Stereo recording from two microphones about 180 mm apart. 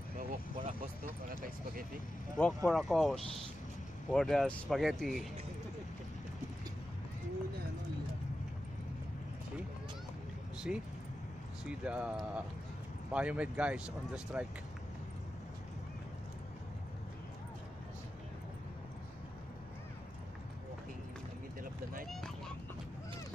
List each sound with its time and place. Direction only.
0.2 s vehicle: 40° right (ahead or behind)
2.3 s speech: 5° left (ahead or behind)
10.7 s speech: 5° right (ahead or behind)
22.0 s a sound: centre (ahead or behind)